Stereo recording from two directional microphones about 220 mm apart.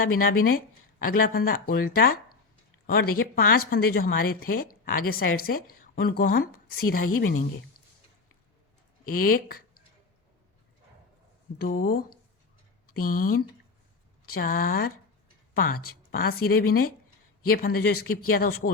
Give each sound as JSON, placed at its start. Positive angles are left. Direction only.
{"t": 0.0, "sound": "a woman's voice", "side_deg": 40}
{"t": 9.0, "sound": "speech", "side_deg": 40}
{"t": 11.5, "sound": "a woman's voice", "side_deg": 45}